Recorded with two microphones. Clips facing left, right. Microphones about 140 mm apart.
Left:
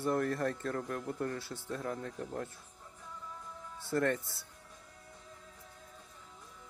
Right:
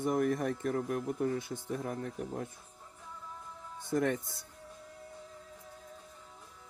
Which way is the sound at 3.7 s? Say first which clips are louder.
Right 1 dB; 15° right (ahead or behind).